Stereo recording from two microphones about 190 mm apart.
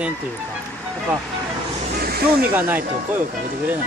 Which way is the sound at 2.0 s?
55° right (ahead or behind).